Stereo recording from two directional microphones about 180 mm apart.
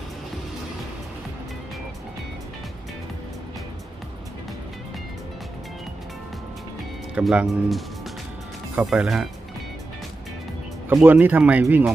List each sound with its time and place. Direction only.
7.2 s speech: 5° right (ahead or behind)
10.8 s speech: 10° right (ahead or behind)